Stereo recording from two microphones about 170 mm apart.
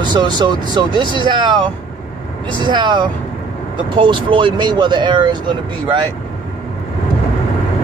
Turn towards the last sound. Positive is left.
turn(degrees=-25)  # may be behind; listen again after turning